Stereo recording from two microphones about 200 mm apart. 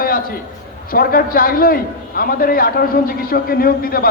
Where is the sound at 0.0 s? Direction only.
45° left (ahead or behind).